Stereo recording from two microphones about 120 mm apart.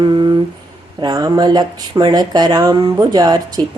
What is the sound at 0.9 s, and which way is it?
Speech, 35° right (ahead or behind).